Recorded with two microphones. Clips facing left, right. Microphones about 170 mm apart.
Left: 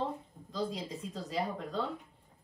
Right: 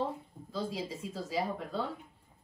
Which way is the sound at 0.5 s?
5° right (ahead or behind).